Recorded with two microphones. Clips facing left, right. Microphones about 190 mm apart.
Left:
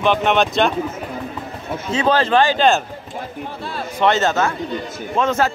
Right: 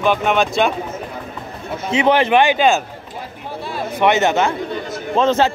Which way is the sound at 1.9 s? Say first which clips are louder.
Right 2 dB; 20° right (ahead or behind).